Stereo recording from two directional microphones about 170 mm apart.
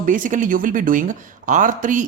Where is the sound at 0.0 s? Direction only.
50° right (ahead or behind).